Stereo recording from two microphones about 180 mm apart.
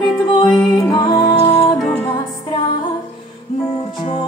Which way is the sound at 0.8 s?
20° left (ahead or behind).